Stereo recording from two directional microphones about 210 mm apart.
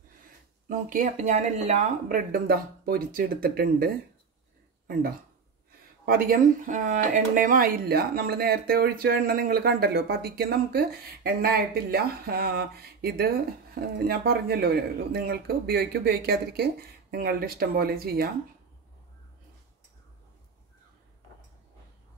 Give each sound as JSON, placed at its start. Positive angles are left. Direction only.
{"t": 0.7, "sound": "speech", "side_deg": -40}
{"t": 6.0, "sound": "speech", "side_deg": -45}